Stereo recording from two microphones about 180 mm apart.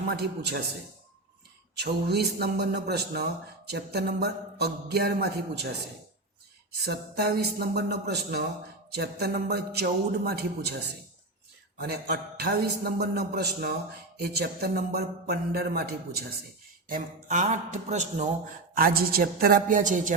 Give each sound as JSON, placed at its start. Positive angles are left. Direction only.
{"t": 0.1, "sound": "a man's voice", "side_deg": -65}
{"t": 1.8, "sound": "a man's voice", "side_deg": -65}
{"t": 6.8, "sound": "a man's voice", "side_deg": -65}
{"t": 11.8, "sound": "a man's voice", "side_deg": -60}
{"t": 16.9, "sound": "a man's voice", "side_deg": -40}
{"t": 18.7, "sound": "a woman's voice", "side_deg": -55}